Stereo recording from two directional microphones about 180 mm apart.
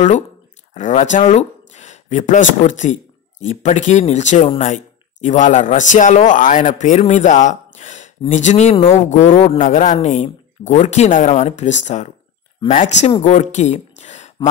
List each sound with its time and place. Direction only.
0.7 s speech: 45° left (ahead or behind)
1.1 s a sound: 40° left (ahead or behind)
2.6 s speech: 40° left (ahead or behind)
4.4 s speech: 30° left (ahead or behind)
4.6 s speech: 45° left (ahead or behind)